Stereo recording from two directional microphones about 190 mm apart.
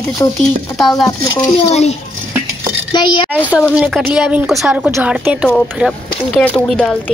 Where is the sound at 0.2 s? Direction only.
15° left (ahead or behind).